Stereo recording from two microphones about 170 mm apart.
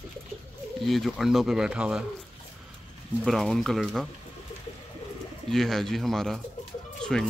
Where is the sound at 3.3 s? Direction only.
Centre (ahead or behind).